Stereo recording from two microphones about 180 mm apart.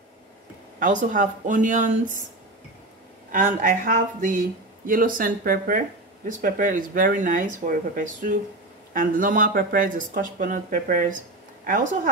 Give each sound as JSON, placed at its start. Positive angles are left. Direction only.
{"t": 0.7, "sound": "speech", "side_deg": -45}
{"t": 3.3, "sound": "speech", "side_deg": -45}